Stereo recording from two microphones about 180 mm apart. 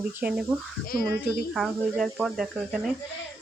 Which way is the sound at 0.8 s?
55° left (ahead or behind).